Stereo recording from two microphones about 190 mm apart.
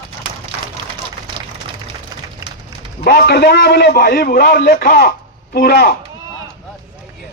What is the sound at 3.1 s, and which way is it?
A man's voice, 60° left (ahead or behind).